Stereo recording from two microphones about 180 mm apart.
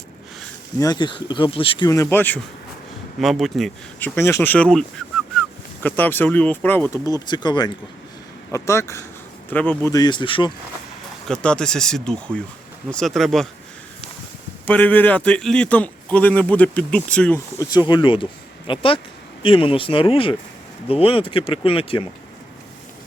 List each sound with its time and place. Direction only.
0.8 s speech: 20° left (ahead or behind)
1.9 s a man's voice: 15° left (ahead or behind)
3.2 s a man's voice: centre (ahead or behind); by 10.5 s 25° left (ahead or behind)
11.3 s speech: 5° left (ahead or behind)
14.7 s a man's voice: 10° left (ahead or behind)
17.6 s speech: 25° left (ahead or behind)